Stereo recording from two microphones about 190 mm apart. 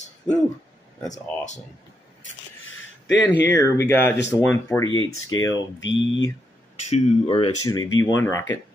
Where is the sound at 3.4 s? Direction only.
15° left (ahead or behind).